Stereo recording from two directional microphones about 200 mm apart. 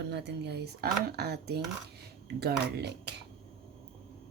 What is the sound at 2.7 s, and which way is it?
Speech, 55° right (ahead or behind).